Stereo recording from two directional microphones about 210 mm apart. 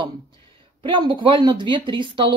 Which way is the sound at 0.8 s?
20° right (ahead or behind).